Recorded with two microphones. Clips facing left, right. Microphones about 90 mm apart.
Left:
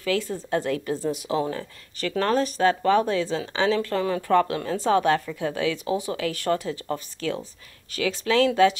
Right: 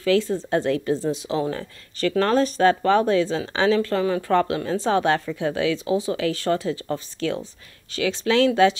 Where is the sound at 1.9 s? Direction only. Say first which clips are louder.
Right 3 dB; 15° left (ahead or behind).